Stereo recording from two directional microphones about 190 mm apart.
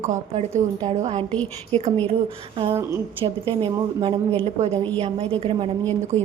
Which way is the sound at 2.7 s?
15° right (ahead or behind).